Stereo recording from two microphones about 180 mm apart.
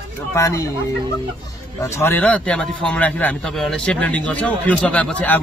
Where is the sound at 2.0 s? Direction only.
10° left (ahead or behind).